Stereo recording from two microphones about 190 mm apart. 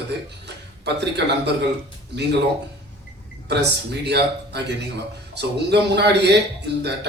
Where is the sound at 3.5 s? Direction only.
60° right (ahead or behind).